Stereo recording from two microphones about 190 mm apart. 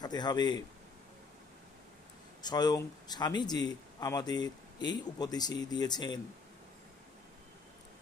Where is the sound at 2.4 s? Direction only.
20° left (ahead or behind).